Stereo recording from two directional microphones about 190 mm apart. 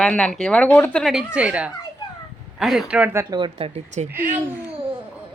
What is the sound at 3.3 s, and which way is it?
Speech, 25° right (ahead or behind).